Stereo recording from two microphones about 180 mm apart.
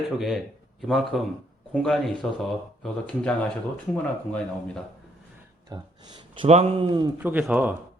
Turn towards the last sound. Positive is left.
turn(degrees=-10)  # may be behind; listen again after turning